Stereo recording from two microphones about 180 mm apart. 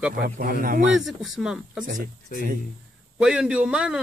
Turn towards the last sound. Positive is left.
turn(degrees=-5)  # may be behind; listen again after turning